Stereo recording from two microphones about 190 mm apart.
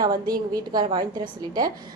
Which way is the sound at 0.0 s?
20° right (ahead or behind).